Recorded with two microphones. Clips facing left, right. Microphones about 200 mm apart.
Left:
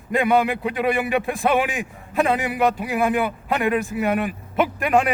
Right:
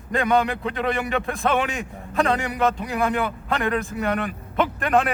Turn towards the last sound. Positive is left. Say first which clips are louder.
# left 2 dB
turn(degrees=5)  # may be behind; listen again after turning